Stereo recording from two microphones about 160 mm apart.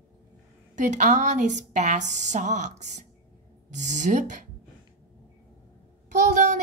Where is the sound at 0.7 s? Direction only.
50° right (ahead or behind).